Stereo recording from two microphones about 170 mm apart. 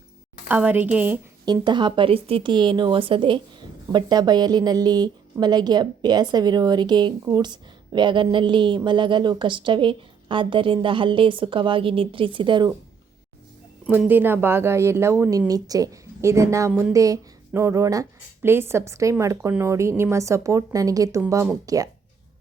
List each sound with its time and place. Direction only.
0.4 s a woman's voice: 10° right (ahead or behind)
1.5 s a woman's voice: 25° right (ahead or behind)
13.8 s a woman's voice: 5° right (ahead or behind)